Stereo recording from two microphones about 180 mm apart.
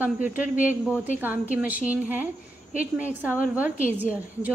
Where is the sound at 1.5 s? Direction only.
10° right (ahead or behind).